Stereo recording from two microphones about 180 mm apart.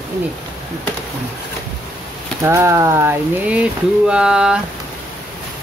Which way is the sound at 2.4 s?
15° right (ahead or behind).